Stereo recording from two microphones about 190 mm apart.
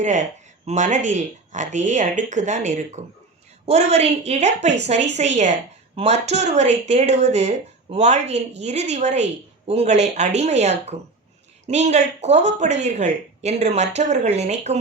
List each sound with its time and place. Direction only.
0.0 s speech: 40° right (ahead or behind)